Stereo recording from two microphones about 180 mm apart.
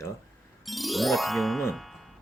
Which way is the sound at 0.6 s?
Centre (ahead or behind).